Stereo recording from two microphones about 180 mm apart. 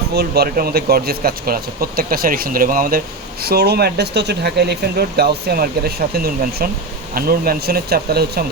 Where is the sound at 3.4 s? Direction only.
60° right (ahead or behind).